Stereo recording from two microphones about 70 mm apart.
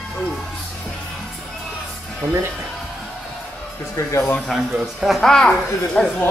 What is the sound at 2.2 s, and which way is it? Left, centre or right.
Speech, right.